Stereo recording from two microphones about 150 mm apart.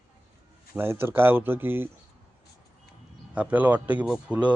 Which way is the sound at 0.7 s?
15° right (ahead or behind).